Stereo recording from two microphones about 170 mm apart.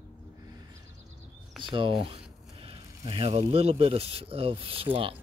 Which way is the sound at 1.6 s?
30° right (ahead or behind).